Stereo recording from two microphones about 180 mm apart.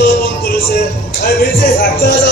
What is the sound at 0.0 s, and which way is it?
Speech, 65° left (ahead or behind).